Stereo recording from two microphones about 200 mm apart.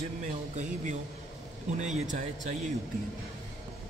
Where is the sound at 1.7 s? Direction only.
35° right (ahead or behind).